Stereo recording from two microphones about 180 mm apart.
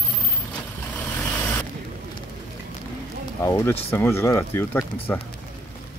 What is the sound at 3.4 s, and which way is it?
Speech, 15° left (ahead or behind).